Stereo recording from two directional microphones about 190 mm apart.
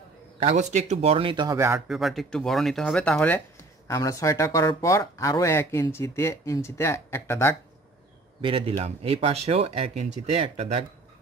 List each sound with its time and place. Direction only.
0.4 s speech: 35° right (ahead or behind); by 1.8 s 15° right (ahead or behind)
1.9 s speech: centre (ahead or behind)
8.4 s speech: 25° right (ahead or behind)